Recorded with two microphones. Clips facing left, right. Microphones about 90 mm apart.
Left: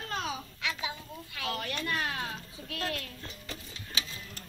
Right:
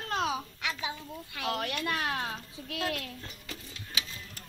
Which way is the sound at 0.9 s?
25° right (ahead or behind).